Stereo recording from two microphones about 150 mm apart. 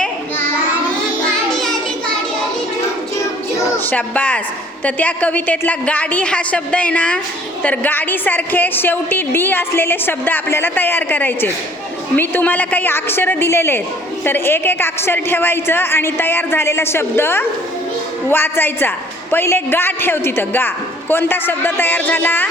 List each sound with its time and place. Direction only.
0.0 s child singing: 15° left (ahead or behind)
1.5 s child singing: centre (ahead or behind)
3.8 s a woman's voice: 10° left (ahead or behind)